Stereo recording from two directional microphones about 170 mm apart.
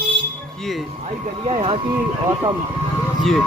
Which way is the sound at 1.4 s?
35° right (ahead or behind).